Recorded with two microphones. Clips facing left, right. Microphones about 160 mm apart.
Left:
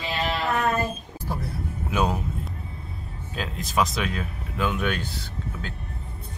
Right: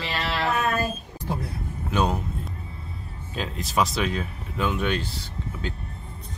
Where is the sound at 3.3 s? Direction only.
Centre (ahead or behind).